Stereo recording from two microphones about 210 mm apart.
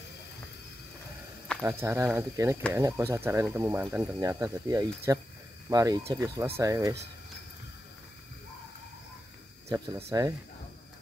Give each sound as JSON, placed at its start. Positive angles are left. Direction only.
{"t": 1.6, "sound": "speech", "side_deg": -10}
{"t": 9.7, "sound": "speech", "side_deg": -20}